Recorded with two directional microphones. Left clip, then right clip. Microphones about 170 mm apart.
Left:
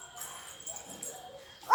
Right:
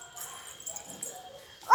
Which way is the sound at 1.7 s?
10° right (ahead or behind).